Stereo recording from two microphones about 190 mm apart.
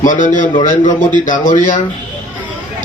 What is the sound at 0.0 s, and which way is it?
A man's voice, 40° left (ahead or behind).